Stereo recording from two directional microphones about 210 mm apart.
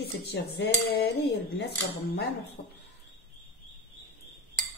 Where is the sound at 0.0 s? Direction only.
50° left (ahead or behind).